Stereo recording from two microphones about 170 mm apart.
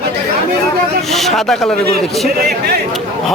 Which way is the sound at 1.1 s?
Centre (ahead or behind).